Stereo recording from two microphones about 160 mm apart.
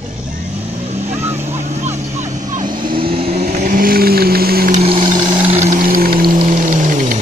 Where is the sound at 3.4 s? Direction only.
55° right (ahead or behind); by 4.8 s 70° right (ahead or behind).